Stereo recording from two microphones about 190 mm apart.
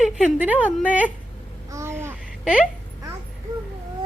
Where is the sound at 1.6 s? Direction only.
15° right (ahead or behind).